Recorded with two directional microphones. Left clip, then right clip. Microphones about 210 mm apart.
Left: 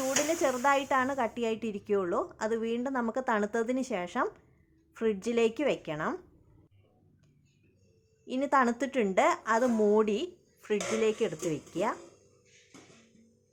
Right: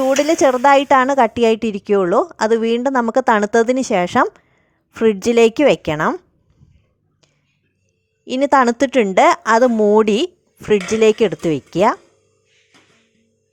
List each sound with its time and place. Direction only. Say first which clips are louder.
0.3 s a woman's voice: right 15 dB; 40° right (ahead or behind)
8.2 s a woman's voice: right 13 dB; 40° right (ahead or behind)